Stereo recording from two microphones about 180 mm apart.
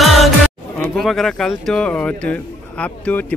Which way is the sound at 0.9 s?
Centre (ahead or behind).